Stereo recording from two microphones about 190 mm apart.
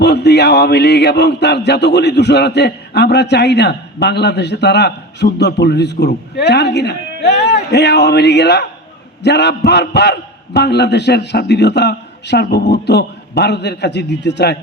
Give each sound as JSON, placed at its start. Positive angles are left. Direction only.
{"t": 0.0, "sound": "a man's voice", "side_deg": 60}